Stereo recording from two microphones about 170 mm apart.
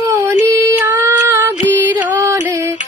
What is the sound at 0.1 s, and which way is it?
Female singing, 15° right (ahead or behind).